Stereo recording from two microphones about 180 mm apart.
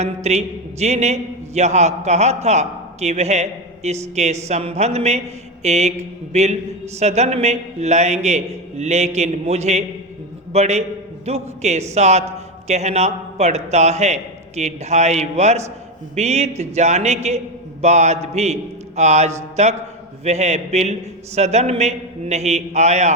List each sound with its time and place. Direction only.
0.0 s a man's voice: 35° right (ahead or behind)